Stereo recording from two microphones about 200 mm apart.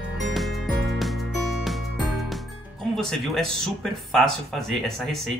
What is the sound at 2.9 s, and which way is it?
Speech, centre (ahead or behind).